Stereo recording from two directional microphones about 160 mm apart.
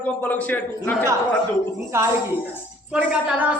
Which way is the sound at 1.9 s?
15° right (ahead or behind).